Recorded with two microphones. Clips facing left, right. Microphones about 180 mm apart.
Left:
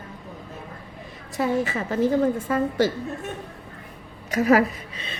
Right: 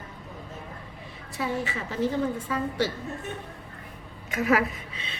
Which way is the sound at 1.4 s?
45° left (ahead or behind).